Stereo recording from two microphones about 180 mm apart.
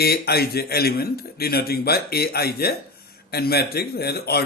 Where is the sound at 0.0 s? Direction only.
60° left (ahead or behind).